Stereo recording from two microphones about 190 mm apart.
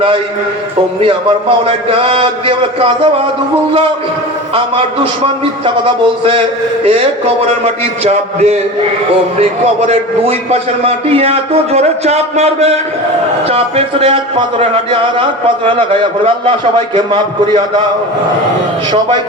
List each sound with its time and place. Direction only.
1.0 s a man's voice: 30° right (ahead or behind)
5.2 s a man's voice: 25° right (ahead or behind)
18.9 s a man's voice: 25° right (ahead or behind)